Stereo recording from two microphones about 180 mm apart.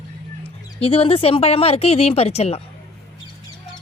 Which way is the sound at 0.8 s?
30° left (ahead or behind).